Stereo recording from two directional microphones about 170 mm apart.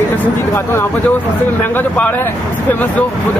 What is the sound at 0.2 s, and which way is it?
Speech, 15° left (ahead or behind).